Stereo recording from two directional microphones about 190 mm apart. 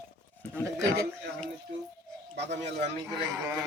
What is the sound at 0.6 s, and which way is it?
Speech, 15° right (ahead or behind).